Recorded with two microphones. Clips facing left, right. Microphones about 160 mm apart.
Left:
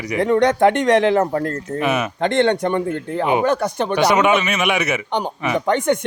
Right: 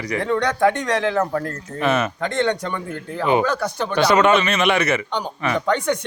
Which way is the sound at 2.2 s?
60° left (ahead or behind).